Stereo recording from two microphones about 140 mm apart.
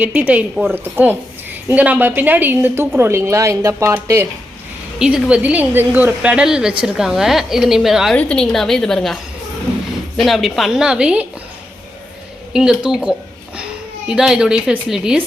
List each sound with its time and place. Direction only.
0.0 s a woman's voice: 10° right (ahead or behind)
4.9 s a woman's voice: 5° right (ahead or behind)
8.1 s a woman's voice: 10° left (ahead or behind)
10.2 s a woman's voice: centre (ahead or behind)
12.5 s a woman's voice: 5° right (ahead or behind)